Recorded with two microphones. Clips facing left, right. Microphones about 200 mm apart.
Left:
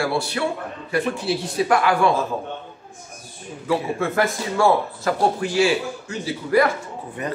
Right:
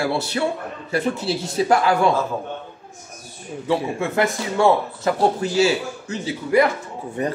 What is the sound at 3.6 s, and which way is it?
Speech, 20° right (ahead or behind).